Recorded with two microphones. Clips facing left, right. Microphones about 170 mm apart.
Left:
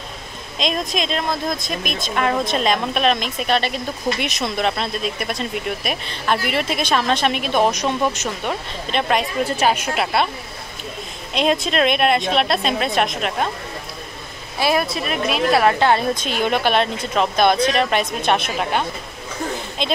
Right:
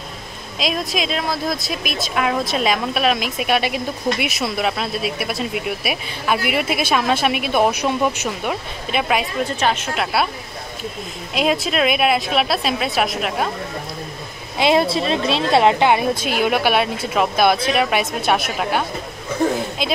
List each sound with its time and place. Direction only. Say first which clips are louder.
0.6 s speech: even; 5° right (ahead or behind)
9.6 s a woman's voice: left 2 dB; 10° left (ahead or behind)
11.3 s a woman's voice: even; 5° right (ahead or behind)
14.6 s speech: right 4 dB; 25° right (ahead or behind)
15.8 s a woman's voice: right 1 dB; 15° right (ahead or behind)